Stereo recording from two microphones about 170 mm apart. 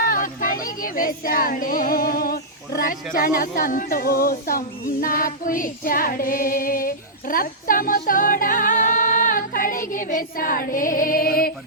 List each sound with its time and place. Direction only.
0.0 s speech: 55° left (ahead or behind)